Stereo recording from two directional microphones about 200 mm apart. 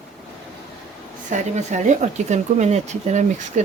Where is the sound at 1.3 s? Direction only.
35° right (ahead or behind).